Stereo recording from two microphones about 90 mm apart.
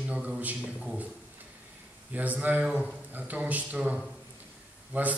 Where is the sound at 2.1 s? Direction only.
20° right (ahead or behind).